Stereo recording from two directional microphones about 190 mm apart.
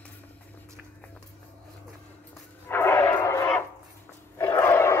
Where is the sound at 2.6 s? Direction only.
10° left (ahead or behind).